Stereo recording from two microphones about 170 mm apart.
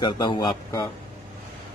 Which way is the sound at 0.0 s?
25° left (ahead or behind).